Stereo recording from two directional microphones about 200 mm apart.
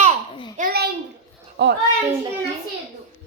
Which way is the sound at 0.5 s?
50° right (ahead or behind).